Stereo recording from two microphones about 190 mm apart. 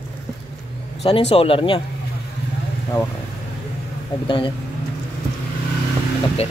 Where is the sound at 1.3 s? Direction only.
30° left (ahead or behind).